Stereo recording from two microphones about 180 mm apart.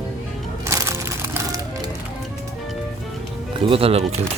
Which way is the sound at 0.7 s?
15° right (ahead or behind).